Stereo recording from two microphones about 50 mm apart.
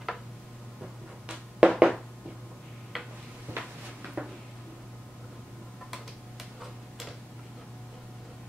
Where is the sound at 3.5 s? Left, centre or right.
Right.